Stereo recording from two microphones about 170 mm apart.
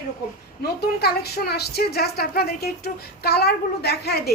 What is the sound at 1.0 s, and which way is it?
A woman's voice, 70° left (ahead or behind).